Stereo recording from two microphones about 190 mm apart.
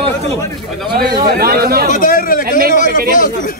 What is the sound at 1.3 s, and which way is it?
Speech, 55° right (ahead or behind).